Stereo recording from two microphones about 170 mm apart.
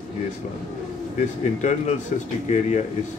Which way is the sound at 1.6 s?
45° left (ahead or behind).